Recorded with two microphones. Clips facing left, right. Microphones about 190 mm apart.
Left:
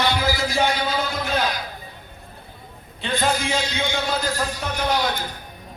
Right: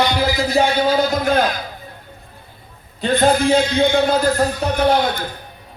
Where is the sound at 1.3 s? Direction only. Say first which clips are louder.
Right 4 dB; 50° right (ahead or behind).